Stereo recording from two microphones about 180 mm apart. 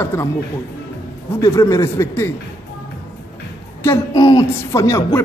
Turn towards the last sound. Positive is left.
turn(degrees=15)  # may be behind; listen again after turning